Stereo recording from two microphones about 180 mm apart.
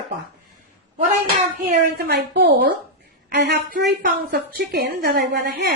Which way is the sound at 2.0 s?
65° right (ahead or behind).